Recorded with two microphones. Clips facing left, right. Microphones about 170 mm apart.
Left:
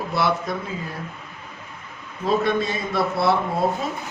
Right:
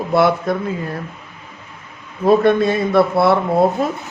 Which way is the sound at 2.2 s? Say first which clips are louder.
Right 8 dB; 55° right (ahead or behind).